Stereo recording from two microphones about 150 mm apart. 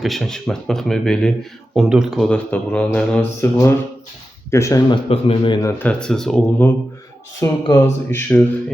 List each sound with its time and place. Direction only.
0.0 s speech: centre (ahead or behind); by 4.8 s 20° left (ahead or behind)
4.9 s speech: 40° left (ahead or behind)
5.8 s speech: 5° left (ahead or behind)